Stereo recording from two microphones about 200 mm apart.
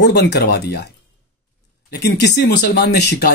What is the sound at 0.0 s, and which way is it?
Speech, 55° left (ahead or behind).